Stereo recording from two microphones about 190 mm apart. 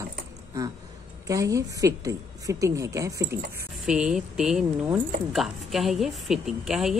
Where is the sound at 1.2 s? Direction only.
15° right (ahead or behind).